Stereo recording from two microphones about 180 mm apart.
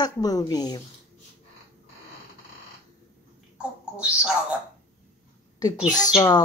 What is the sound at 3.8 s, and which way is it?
Speech, 5° right (ahead or behind).